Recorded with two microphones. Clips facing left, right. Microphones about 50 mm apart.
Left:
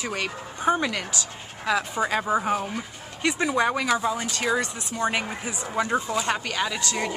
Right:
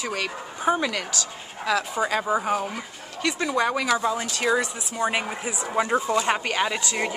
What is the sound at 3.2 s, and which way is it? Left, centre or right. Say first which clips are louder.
Speech: left 1 dB; centre.